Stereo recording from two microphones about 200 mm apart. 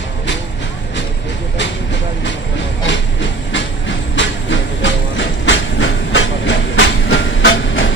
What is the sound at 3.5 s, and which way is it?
Train, 65° left (ahead or behind).